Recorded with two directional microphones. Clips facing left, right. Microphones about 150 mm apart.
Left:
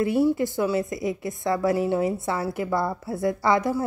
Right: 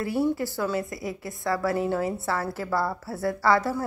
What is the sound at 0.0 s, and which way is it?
A woman's voice, 20° left (ahead or behind).